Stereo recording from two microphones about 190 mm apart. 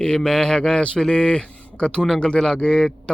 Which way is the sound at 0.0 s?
5° left (ahead or behind).